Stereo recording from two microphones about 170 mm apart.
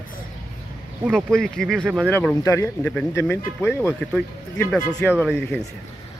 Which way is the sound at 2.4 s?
20° left (ahead or behind).